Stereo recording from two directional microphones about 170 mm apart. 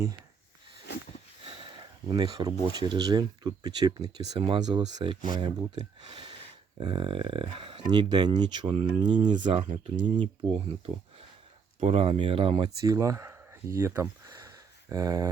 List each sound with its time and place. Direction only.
1.5 s speech: 30° right (ahead or behind)
9.4 s speech: 35° right (ahead or behind); by 15.3 s 20° right (ahead or behind)